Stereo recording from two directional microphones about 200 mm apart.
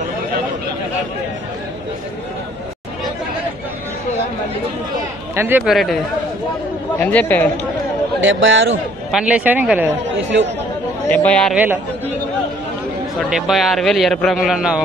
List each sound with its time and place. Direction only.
5.3 s speech: 10° right (ahead or behind)
5.7 s a man's voice: centre (ahead or behind)
8.2 s a man's voice: 70° right (ahead or behind)
9.1 s speech: 5° right (ahead or behind)
11.1 s speech: 5° left (ahead or behind)
11.5 s speech: 10° right (ahead or behind)
13.3 s a man's voice: centre (ahead or behind)